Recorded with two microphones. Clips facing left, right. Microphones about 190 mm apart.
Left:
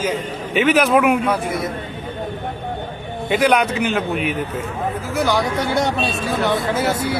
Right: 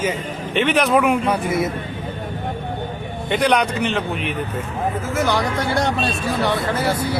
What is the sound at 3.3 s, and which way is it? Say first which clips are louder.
A man's voice: left 2 dB; 5° left (ahead or behind).